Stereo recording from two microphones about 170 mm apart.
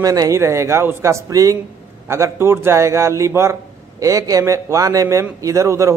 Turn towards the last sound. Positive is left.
turn(degrees=-15)  # may be behind; listen again after turning